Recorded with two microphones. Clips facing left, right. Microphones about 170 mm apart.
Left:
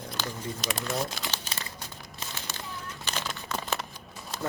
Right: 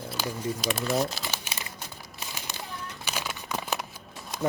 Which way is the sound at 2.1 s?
15° right (ahead or behind).